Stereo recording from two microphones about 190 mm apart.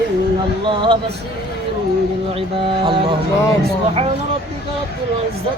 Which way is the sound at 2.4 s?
25° right (ahead or behind).